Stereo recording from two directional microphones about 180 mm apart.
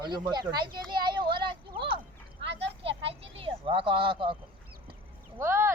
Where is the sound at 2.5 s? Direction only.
75° right (ahead or behind).